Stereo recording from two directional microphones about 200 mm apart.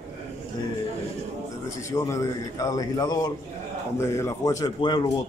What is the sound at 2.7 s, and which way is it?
A man's voice, 20° left (ahead or behind).